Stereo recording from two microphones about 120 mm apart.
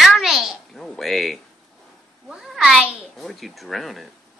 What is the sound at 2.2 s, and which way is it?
A woman's voice, 5° right (ahead or behind).